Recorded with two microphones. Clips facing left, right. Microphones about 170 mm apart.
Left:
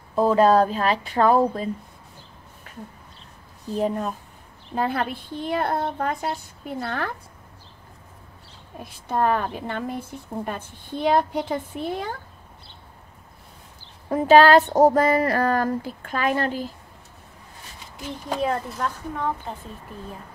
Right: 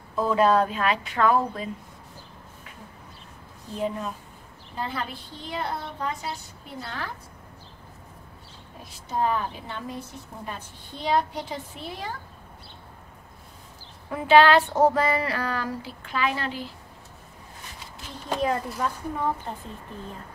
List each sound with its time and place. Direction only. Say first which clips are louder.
0.1 s speech: left 4 dB; 35° left (ahead or behind)
3.7 s a woman's voice: left 5 dB; 45° left (ahead or behind)
4.7 s a woman's voice: left 7 dB; 55° left (ahead or behind)
9.1 s a woman's voice: left 4 dB; 60° left (ahead or behind)
14.0 s a woman's voice: left 3 dB; 40° left (ahead or behind)
18.3 s speech: left 1 dB; centre (ahead or behind)